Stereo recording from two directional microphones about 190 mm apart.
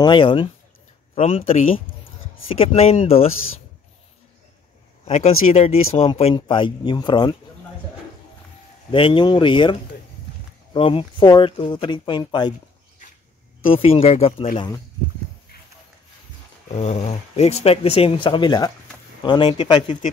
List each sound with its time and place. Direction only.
0.0 s speech: 25° left (ahead or behind)
5.0 s speech: 35° left (ahead or behind)
8.9 s speech: 25° left (ahead or behind)
13.7 s speech: 30° left (ahead or behind)
16.7 s speech: 35° left (ahead or behind)